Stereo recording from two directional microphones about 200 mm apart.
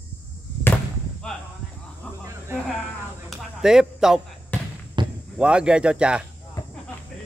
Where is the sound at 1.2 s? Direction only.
5° left (ahead or behind).